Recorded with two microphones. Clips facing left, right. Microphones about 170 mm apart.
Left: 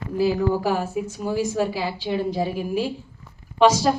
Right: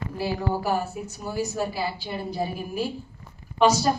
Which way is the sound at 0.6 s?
90° left.